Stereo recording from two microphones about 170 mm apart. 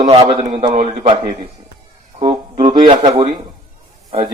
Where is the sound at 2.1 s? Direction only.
30° right (ahead or behind).